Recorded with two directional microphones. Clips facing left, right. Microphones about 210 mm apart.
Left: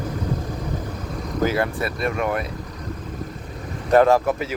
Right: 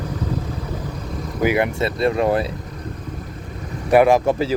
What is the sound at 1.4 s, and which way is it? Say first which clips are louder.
Speech: right 3 dB; 15° right (ahead or behind).